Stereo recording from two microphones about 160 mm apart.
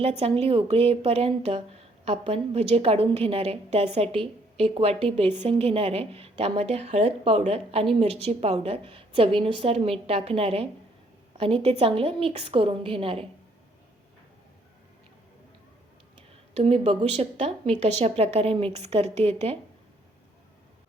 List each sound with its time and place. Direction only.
0.0 s a woman's voice: 40° right (ahead or behind)
16.1 s a woman's voice: 40° right (ahead or behind)